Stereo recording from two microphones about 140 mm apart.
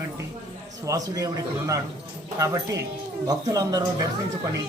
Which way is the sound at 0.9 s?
25° right (ahead or behind).